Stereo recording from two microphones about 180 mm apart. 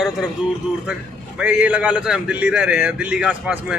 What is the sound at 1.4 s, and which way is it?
A man's voice, 5° right (ahead or behind).